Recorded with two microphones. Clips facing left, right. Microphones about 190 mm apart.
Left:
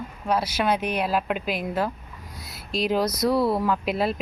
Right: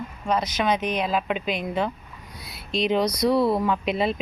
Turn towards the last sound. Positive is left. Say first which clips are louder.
# right 1 dB
turn(degrees=5)  # may be behind; listen again after turning